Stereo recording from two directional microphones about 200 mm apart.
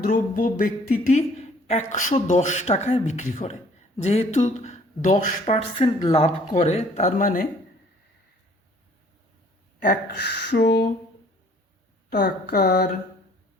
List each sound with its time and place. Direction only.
0.0 s speech: 40° left (ahead or behind)
9.8 s speech: 55° left (ahead or behind)
12.1 s a sound: 50° left (ahead or behind)